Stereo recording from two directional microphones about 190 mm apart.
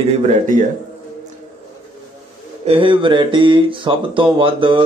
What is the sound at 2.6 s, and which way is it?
Speech, 25° right (ahead or behind).